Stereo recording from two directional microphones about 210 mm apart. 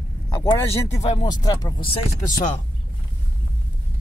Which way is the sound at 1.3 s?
20° left (ahead or behind).